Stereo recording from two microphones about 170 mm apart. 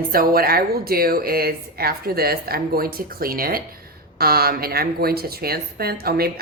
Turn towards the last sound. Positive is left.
turn(degrees=-65)  # may be behind; listen again after turning